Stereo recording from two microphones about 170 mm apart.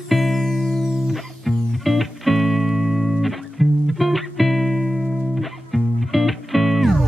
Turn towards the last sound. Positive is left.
turn(degrees=0)  # may be behind; listen again after turning